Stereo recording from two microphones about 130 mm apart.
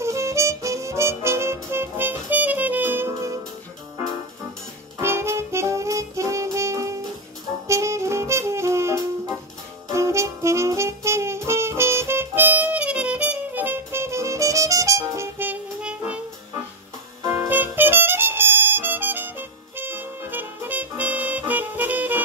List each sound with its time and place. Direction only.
0.0 s music: 20° right (ahead or behind)
4.9 s music: 20° right (ahead or behind)
7.6 s saxophone: 25° right (ahead or behind)
17.3 s music: 15° right (ahead or behind)